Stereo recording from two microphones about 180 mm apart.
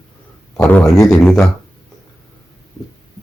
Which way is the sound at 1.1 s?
5° left (ahead or behind).